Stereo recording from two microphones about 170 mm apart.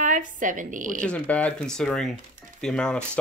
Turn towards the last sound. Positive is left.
turn(degrees=5)  # may be behind; listen again after turning